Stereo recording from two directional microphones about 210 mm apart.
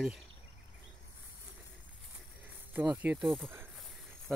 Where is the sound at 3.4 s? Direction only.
10° right (ahead or behind).